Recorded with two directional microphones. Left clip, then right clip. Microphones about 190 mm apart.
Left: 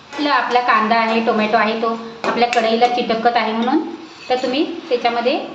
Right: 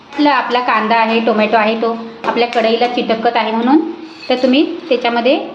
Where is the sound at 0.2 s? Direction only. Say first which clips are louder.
Right 3 dB; 45° right (ahead or behind).